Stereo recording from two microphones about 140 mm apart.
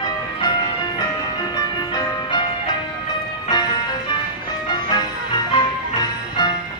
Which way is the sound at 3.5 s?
30° left (ahead or behind).